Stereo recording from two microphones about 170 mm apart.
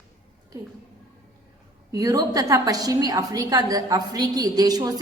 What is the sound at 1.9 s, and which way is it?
A woman's voice, 20° right (ahead or behind).